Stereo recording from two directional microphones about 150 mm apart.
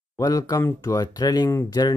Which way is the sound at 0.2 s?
20° left (ahead or behind).